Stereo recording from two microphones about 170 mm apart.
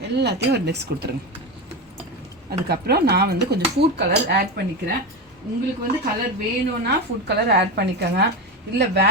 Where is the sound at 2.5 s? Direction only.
70° right (ahead or behind).